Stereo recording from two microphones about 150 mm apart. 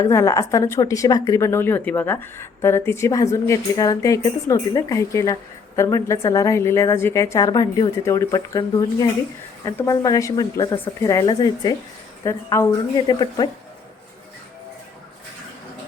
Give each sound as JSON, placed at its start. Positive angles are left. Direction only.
{"t": 0.0, "sound": "a woman's voice", "side_deg": 20}
{"t": 13.0, "sound": "a woman's voice", "side_deg": 30}